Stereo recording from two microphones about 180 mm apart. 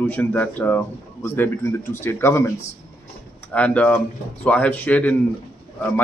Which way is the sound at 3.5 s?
5° left (ahead or behind).